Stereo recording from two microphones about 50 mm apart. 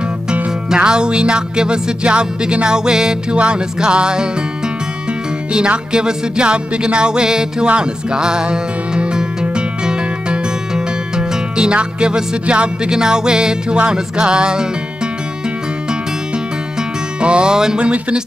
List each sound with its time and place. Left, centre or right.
0.3 s music: centre
5.9 s music: centre
17.2 s music: centre